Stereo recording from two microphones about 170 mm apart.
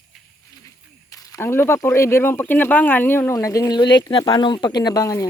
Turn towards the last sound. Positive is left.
turn(degrees=20)  # may be behind; listen again after turning